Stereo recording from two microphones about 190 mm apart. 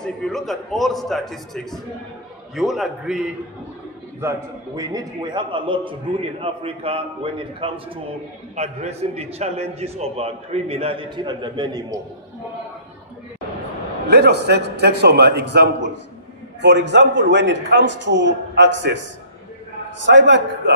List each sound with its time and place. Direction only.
0.0 s a man's voice: centre (ahead or behind)
4.2 s a man's voice: 15° right (ahead or behind)
14.0 s a man's voice: 60° right (ahead or behind)
20.1 s a man's voice: 70° right (ahead or behind)